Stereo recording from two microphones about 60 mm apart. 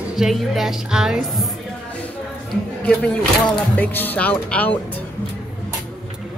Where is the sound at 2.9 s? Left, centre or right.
Centre.